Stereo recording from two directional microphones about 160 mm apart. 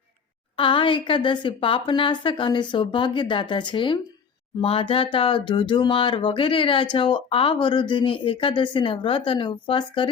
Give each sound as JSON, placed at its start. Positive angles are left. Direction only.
{"t": 0.5, "sound": "speech", "side_deg": 30}